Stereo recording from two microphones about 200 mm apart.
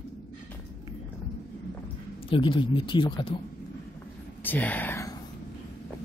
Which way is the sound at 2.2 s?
25° left (ahead or behind).